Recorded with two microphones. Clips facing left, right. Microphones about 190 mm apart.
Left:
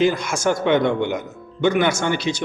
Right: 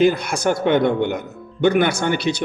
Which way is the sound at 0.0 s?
60° right (ahead or behind).